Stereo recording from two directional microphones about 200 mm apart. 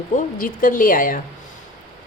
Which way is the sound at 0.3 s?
45° left (ahead or behind).